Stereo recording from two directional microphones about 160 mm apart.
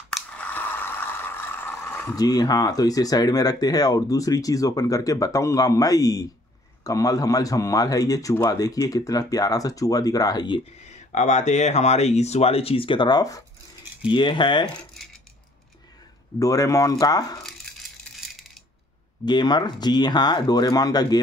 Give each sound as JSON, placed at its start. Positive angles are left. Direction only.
{"t": 0.1, "sound": "a sound", "side_deg": 10}
{"t": 2.2, "sound": "speech", "side_deg": 25}
{"t": 10.9, "sound": "speech", "side_deg": 50}
{"t": 16.3, "sound": "speech", "side_deg": 20}
{"t": 19.2, "sound": "speech", "side_deg": 25}